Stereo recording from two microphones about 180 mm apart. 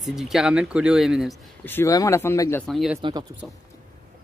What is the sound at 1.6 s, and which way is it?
Speech, 15° left (ahead or behind).